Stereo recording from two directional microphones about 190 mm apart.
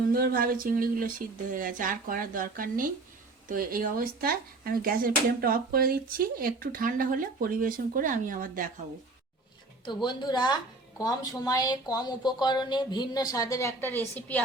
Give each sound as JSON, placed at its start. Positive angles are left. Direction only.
{"t": 0.1, "sound": "speech", "side_deg": -50}
{"t": 9.8, "sound": "a woman's voice", "side_deg": 25}